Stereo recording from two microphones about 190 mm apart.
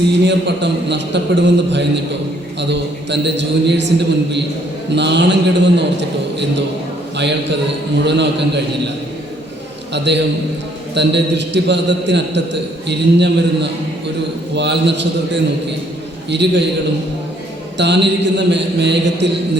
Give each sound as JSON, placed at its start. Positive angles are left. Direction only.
{"t": 0.3, "sound": "a man's voice", "side_deg": -65}
{"t": 8.0, "sound": "a man's voice", "side_deg": -65}
{"t": 9.9, "sound": "a man's voice", "side_deg": -65}
{"t": 17.7, "sound": "a man's voice", "side_deg": -65}